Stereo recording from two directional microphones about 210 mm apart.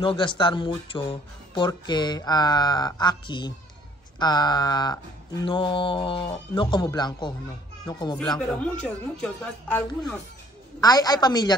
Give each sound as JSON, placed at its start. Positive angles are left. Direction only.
{"t": 0.0, "sound": "speech", "side_deg": 25}
{"t": 8.2, "sound": "speech", "side_deg": 5}
{"t": 10.8, "sound": "speech", "side_deg": 20}